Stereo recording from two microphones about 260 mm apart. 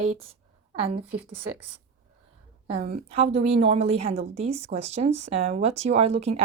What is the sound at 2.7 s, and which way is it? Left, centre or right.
Speech, right.